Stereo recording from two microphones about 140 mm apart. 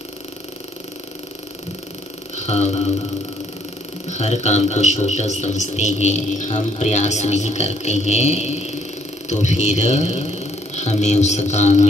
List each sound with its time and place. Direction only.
2.3 s music: 50° left (ahead or behind)
4.1 s speech: 55° left (ahead or behind)